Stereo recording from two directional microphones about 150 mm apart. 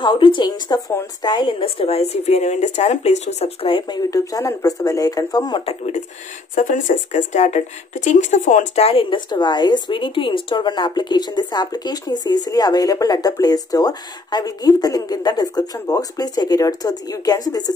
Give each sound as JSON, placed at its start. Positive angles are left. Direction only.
{"t": 0.0, "sound": "speech", "side_deg": 30}
{"t": 5.7, "sound": "speech", "side_deg": 50}